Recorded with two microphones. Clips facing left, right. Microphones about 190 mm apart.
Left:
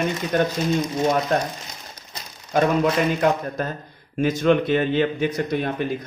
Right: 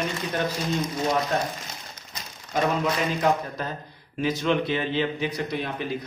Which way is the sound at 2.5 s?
55° left (ahead or behind).